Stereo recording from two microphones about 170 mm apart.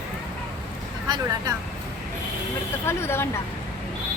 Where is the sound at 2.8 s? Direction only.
15° left (ahead or behind).